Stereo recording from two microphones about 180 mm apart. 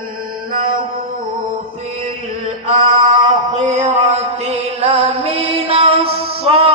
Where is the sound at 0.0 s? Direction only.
50° right (ahead or behind).